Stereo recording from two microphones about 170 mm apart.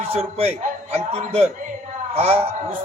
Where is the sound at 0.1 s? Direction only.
35° right (ahead or behind).